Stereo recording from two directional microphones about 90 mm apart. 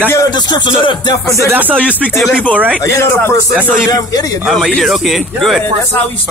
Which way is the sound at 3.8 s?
40° left (ahead or behind).